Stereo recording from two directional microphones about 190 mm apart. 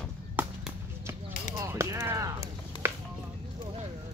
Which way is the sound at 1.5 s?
15° right (ahead or behind).